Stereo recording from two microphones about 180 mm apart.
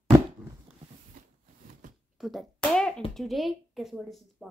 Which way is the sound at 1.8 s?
45° right (ahead or behind).